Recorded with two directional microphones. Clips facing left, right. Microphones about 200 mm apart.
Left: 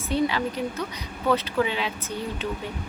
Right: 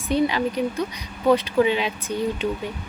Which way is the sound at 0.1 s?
15° right (ahead or behind).